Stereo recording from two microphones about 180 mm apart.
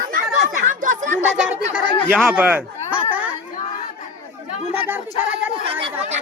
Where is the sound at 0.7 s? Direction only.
45° right (ahead or behind).